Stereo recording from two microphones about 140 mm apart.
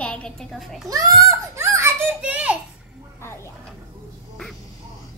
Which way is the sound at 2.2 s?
10° right (ahead or behind).